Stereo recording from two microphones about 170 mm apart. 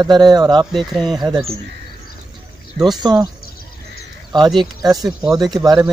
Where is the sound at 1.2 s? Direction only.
20° right (ahead or behind).